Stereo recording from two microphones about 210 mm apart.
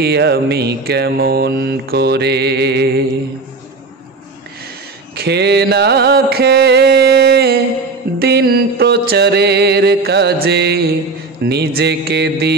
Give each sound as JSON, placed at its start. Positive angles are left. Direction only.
{"t": 0.0, "sound": "mantra", "side_deg": -50}
{"t": 5.1, "sound": "music", "side_deg": -50}
{"t": 8.2, "sound": "mantra", "side_deg": -50}